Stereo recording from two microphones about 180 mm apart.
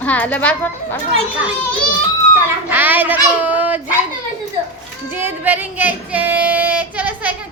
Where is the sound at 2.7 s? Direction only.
10° right (ahead or behind).